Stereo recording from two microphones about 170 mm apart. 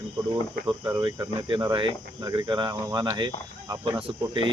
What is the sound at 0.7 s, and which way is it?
Speech, 25° right (ahead or behind).